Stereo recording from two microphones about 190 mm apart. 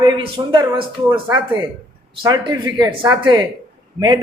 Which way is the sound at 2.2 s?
20° right (ahead or behind).